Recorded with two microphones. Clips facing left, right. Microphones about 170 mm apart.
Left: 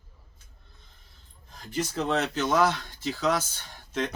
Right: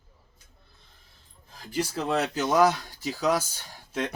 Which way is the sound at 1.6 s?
5° right (ahead or behind).